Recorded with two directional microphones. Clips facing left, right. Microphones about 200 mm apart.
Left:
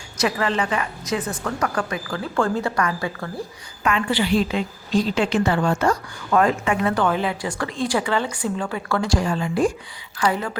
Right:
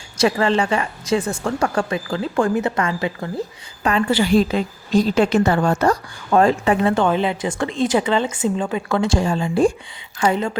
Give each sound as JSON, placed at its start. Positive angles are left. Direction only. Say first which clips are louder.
{"t": 0.2, "sound": "a woman's voice", "louder": "right 5 dB", "side_deg": -30}
{"t": 3.8, "sound": "a woman's voice", "louder": "right 4 dB", "side_deg": -40}